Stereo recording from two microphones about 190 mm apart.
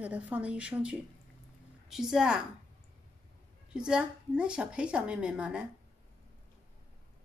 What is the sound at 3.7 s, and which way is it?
A woman's voice, 5° right (ahead or behind).